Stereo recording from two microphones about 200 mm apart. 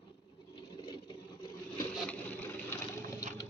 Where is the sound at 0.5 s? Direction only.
25° left (ahead or behind).